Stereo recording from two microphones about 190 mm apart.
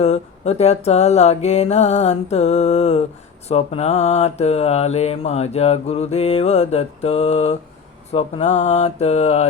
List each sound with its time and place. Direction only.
0.0 s mantra: 35° left (ahead or behind)